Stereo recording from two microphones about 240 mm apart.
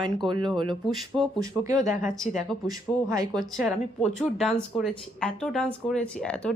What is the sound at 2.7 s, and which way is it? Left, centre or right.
Speech, centre.